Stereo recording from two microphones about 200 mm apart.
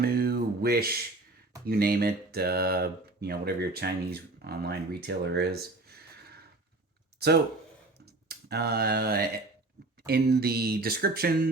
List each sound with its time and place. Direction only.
0.0 s music: 50° right (ahead or behind)
1.6 s speech: 50° right (ahead or behind)